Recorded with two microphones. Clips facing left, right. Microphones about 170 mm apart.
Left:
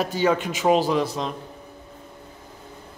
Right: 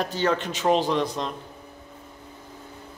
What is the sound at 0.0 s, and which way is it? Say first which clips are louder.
Speech: left 3 dB; 10° left (ahead or behind).